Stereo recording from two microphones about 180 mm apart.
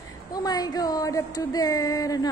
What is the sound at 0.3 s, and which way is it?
Speech, 20° left (ahead or behind).